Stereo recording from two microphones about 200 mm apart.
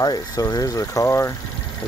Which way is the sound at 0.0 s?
20° left (ahead or behind).